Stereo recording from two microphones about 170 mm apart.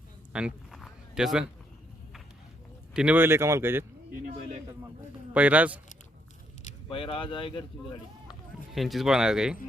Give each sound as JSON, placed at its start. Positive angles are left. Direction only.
{"t": 0.3, "sound": "a sound", "side_deg": -5}
{"t": 2.9, "sound": "speech", "side_deg": -5}
{"t": 5.3, "sound": "speech", "side_deg": -10}
{"t": 6.8, "sound": "speech", "side_deg": 30}
{"t": 8.7, "sound": "speech", "side_deg": 0}